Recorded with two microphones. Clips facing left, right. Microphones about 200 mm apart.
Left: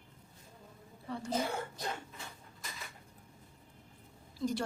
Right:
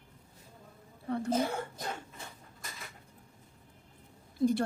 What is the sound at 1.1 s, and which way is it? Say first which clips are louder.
Speech: right 7 dB; 55° right (ahead or behind).